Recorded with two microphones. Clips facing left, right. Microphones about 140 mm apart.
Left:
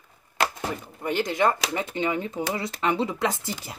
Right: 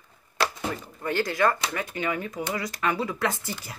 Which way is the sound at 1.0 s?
20° left (ahead or behind).